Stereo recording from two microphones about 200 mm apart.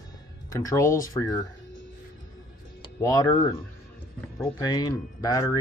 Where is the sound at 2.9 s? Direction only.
15° left (ahead or behind).